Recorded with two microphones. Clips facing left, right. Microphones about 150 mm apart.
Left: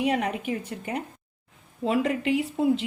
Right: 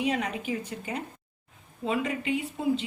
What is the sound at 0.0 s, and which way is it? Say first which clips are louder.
A woman's voice: left 3 dB; 55° left (ahead or behind).